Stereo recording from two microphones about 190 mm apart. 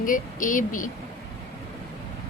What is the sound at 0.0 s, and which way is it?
Speech, 45° left (ahead or behind).